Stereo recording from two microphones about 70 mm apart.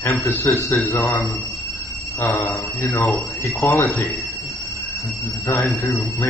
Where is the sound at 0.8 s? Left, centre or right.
Left.